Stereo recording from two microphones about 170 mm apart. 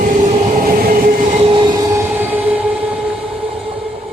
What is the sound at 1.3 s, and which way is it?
Train, 30° right (ahead or behind).